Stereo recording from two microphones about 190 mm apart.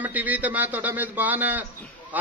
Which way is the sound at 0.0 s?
10° right (ahead or behind).